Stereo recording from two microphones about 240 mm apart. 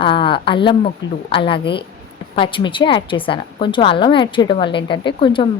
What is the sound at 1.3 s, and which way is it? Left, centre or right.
A woman's voice, left.